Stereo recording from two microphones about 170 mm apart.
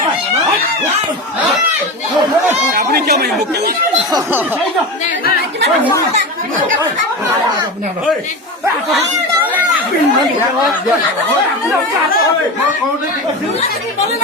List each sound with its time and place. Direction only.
2.7 s speech: 65° right (ahead or behind)